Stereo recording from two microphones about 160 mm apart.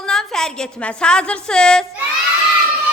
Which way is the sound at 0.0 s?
5° left (ahead or behind).